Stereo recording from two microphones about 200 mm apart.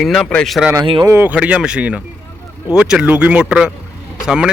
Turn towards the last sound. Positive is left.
turn(degrees=-5)  # may be behind; listen again after turning